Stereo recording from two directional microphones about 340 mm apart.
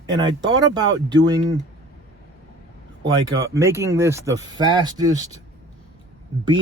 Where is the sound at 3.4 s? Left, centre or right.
Centre.